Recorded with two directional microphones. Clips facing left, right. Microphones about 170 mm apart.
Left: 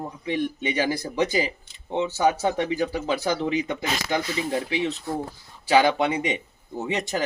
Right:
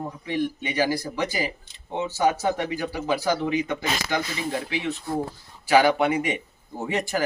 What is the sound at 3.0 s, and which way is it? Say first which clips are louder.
Speech: right 1 dB; 25° left (ahead or behind).